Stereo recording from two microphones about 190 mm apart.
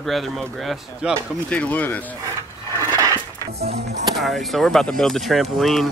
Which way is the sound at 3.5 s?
35° right (ahead or behind).